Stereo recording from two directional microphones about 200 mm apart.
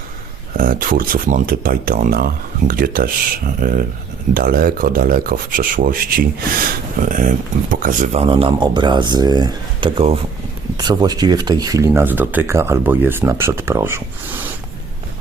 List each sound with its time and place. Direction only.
0.5 s speech: 45° right (ahead or behind); by 14.4 s 10° right (ahead or behind)